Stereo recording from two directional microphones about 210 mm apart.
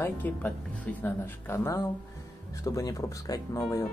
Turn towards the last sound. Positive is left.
turn(degrees=15)  # may be behind; listen again after turning